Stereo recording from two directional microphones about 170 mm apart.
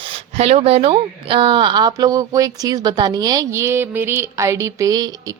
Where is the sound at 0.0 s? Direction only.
35° right (ahead or behind).